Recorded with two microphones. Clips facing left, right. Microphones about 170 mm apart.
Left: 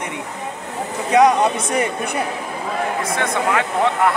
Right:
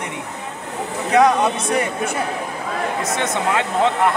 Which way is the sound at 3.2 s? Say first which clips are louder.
Left 1 dB; 20° right (ahead or behind).